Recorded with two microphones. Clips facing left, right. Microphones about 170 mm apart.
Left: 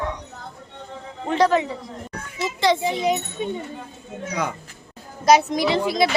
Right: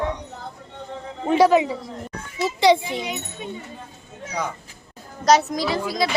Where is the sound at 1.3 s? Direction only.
10° right (ahead or behind).